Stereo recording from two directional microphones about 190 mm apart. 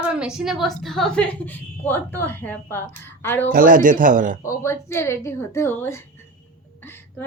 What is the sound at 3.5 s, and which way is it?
Speech, 45° right (ahead or behind).